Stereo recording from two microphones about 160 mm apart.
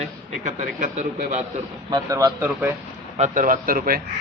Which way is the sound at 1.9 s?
25° right (ahead or behind).